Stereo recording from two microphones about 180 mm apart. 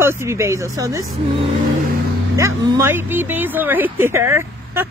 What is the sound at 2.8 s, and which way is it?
Speech, 15° right (ahead or behind).